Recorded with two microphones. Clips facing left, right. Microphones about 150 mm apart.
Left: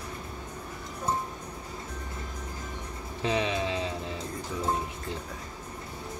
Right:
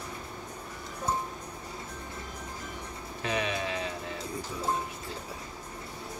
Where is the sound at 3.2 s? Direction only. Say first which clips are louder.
Left 3 dB; 25° left (ahead or behind).